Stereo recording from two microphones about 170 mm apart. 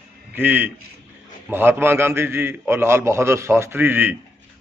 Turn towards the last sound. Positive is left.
turn(degrees=-10)  # may be behind; listen again after turning